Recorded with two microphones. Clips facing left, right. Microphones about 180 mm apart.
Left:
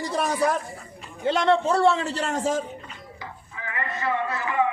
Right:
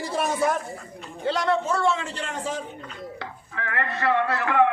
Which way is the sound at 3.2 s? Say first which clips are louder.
Right 4 dB; 70° right (ahead or behind).